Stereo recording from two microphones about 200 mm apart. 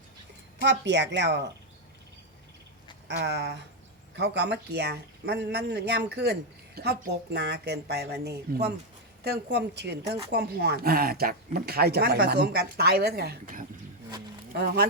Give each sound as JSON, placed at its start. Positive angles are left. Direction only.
{"t": 0.6, "sound": "speech", "side_deg": -60}
{"t": 3.1, "sound": "speech", "side_deg": -55}